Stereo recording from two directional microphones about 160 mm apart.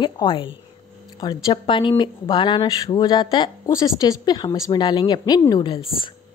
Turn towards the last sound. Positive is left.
turn(degrees=25)  # may be behind; listen again after turning